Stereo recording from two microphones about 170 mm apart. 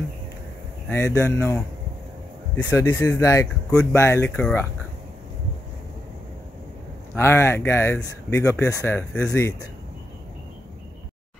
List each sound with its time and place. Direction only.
0.8 s speech: 15° left (ahead or behind)
4.4 s speech: 5° left (ahead or behind)
7.2 s speech: 15° left (ahead or behind)